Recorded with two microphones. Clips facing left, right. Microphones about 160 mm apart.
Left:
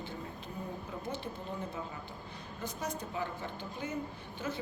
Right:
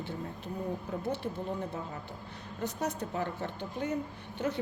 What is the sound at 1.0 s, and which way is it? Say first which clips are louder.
Speech: right 6 dB; 65° right (ahead or behind).